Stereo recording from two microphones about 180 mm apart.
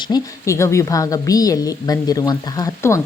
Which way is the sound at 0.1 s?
15° left (ahead or behind).